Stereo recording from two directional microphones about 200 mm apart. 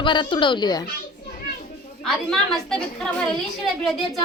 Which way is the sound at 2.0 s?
Centre (ahead or behind).